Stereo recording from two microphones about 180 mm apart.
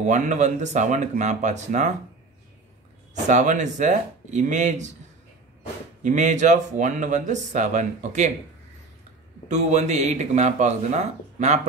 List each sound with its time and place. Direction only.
0.0 s speech: 40° right (ahead or behind)
3.3 s speech: 40° right (ahead or behind)
6.0 s speech: 40° right (ahead or behind)
9.5 s speech: 40° right (ahead or behind)